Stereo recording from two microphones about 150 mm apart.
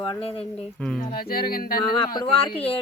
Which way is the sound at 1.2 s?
75° left (ahead or behind).